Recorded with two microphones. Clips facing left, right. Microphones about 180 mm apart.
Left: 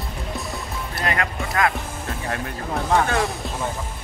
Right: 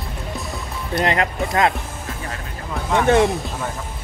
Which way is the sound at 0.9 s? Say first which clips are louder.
Right 6 dB; 25° right (ahead or behind).